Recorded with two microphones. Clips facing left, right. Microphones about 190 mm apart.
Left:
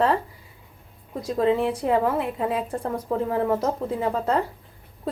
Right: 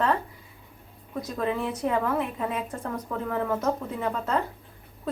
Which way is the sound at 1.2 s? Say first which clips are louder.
Left 7 dB; 30° left (ahead or behind).